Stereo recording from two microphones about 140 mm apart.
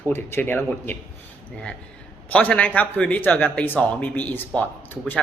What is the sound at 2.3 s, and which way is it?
Speech, 10° left (ahead or behind).